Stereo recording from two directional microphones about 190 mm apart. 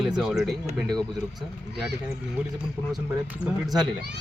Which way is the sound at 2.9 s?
5° right (ahead or behind).